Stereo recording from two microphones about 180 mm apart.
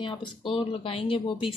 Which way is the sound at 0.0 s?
30° left (ahead or behind).